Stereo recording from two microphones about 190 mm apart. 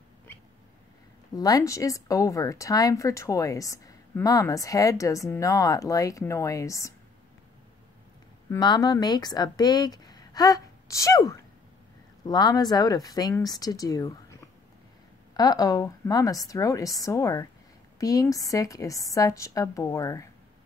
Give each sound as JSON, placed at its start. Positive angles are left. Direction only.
{"t": 1.3, "sound": "speech", "side_deg": 20}
{"t": 8.5, "sound": "speech", "side_deg": 20}